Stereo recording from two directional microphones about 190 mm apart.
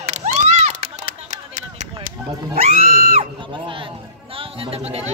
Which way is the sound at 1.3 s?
40° right (ahead or behind).